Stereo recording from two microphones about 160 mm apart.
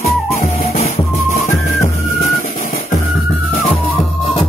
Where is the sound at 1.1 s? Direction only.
40° left (ahead or behind).